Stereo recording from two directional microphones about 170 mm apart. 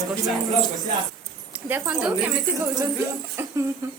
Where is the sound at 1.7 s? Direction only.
5° right (ahead or behind).